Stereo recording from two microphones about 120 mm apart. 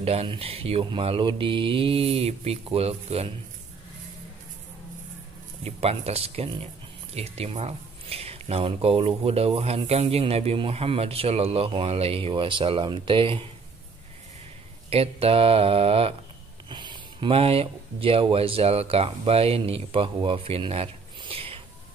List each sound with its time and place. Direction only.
0.0 s speech: 60° right (ahead or behind)
5.6 s speech: 60° right (ahead or behind)
14.9 s speech: 55° right (ahead or behind)
16.6 s speech: 40° right (ahead or behind)